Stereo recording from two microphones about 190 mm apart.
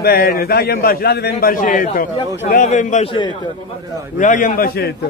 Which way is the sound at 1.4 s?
45° left (ahead or behind).